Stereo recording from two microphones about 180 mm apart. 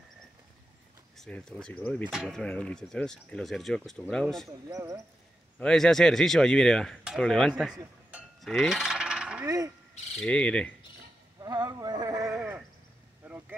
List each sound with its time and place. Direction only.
1.1 s speech: 5° left (ahead or behind)
2.0 s speech: 5° right (ahead or behind)
4.6 s speech: 20° right (ahead or behind)
5.6 s speech: 5° left (ahead or behind)
8.1 s cowbell: 5° right (ahead or behind)
10.1 s speech: 5° left (ahead or behind)
11.4 s a sound: 25° right (ahead or behind)
12.3 s sheep: 5° right (ahead or behind)
13.2 s vehicle: 10° right (ahead or behind)